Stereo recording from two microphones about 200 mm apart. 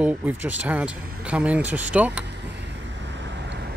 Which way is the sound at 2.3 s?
60° right (ahead or behind).